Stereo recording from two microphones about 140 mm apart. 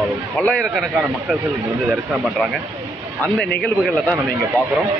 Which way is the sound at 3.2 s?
10° left (ahead or behind).